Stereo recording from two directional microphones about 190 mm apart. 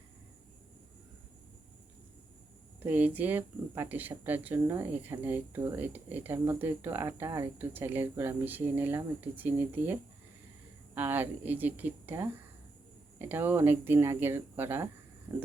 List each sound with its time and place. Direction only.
2.8 s speech: 10° right (ahead or behind)